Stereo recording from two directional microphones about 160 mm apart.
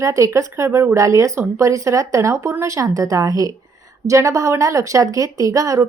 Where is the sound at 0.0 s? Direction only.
20° right (ahead or behind).